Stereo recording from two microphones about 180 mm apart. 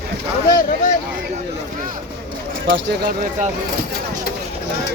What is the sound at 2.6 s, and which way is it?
Speech, 80° right.